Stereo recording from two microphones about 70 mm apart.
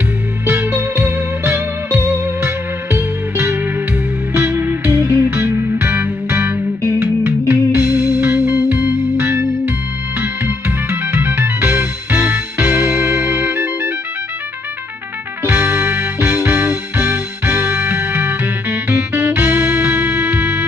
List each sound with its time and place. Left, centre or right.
0.5 s music: right
15.4 s music: right